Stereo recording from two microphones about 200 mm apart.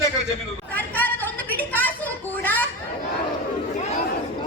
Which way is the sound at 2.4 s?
10° left (ahead or behind).